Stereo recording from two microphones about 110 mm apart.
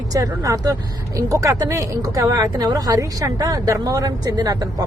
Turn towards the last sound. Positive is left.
turn(degrees=-35)  # may be behind; listen again after turning